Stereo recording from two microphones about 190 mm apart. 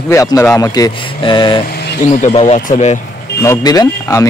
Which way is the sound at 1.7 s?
60° left (ahead or behind).